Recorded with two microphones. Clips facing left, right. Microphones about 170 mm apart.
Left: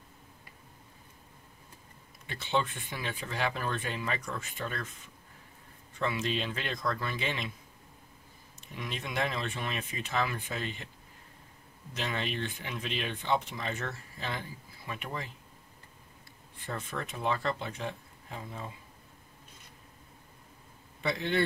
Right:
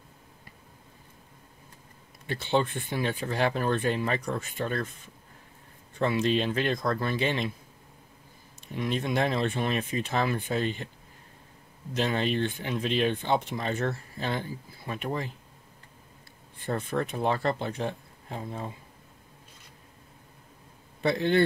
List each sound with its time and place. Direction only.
2.3 s speech: 35° right (ahead or behind)
5.9 s speech: 40° right (ahead or behind)
8.7 s speech: 40° right (ahead or behind)
12.0 s speech: 40° right (ahead or behind)
16.6 s speech: 35° right (ahead or behind)